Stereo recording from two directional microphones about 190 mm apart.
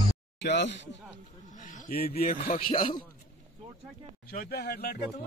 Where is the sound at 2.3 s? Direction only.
50° left (ahead or behind).